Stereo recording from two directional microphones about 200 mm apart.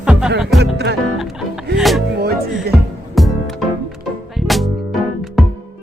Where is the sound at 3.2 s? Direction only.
Centre (ahead or behind).